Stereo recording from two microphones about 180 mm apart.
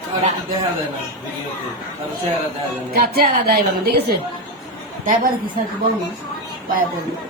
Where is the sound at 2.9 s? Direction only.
60° right (ahead or behind).